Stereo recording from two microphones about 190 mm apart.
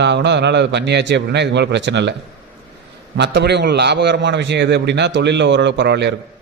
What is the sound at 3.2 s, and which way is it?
A man's voice, 65° right (ahead or behind).